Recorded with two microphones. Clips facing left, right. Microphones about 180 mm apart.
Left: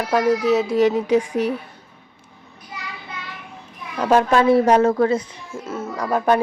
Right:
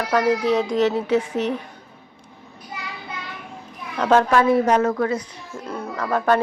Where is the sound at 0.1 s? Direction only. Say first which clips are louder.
Left 2 dB; 10° left (ahead or behind).